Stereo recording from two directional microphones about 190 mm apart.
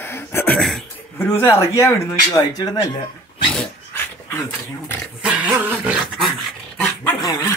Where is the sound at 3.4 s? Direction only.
10° left (ahead or behind).